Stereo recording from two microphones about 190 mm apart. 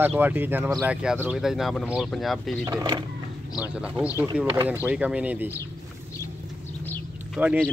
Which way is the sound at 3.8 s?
5° right (ahead or behind).